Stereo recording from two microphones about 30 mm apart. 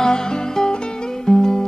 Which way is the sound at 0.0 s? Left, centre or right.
Left.